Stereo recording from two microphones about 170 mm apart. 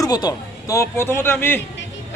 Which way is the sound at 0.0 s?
20° left (ahead or behind).